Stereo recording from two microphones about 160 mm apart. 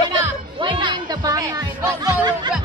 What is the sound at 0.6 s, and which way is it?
Music, 30° right (ahead or behind).